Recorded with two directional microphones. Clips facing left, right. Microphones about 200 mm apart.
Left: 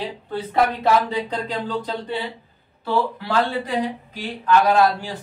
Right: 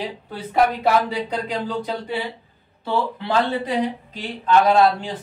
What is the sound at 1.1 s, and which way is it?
Speech, 10° right (ahead or behind).